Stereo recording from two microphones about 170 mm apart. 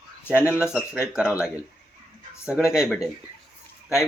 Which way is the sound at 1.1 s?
5° right (ahead or behind).